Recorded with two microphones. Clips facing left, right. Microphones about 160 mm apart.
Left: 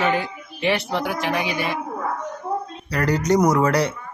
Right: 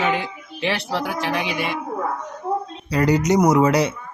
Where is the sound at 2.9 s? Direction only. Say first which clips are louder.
Right 2 dB; 15° right (ahead or behind).